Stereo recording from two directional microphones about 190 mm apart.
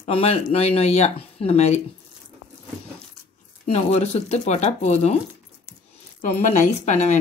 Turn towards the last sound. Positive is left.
turn(degrees=40)  # may be behind; listen again after turning